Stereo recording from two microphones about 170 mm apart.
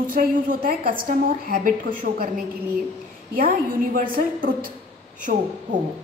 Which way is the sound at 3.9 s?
55° right (ahead or behind).